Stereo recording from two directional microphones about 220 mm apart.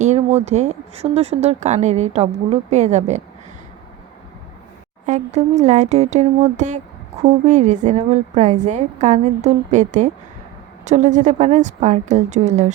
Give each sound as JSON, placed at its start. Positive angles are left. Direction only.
{"t": 0.0, "sound": "speech", "side_deg": -30}
{"t": 5.0, "sound": "speech", "side_deg": -30}